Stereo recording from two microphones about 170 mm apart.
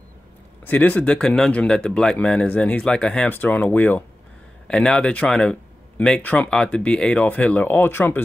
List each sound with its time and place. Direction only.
0.7 s speech: 10° left (ahead or behind)